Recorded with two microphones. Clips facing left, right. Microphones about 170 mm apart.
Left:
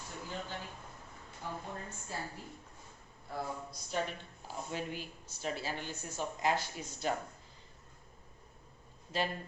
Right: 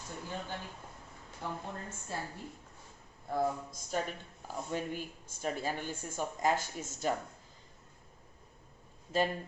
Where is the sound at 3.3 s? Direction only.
45° right (ahead or behind).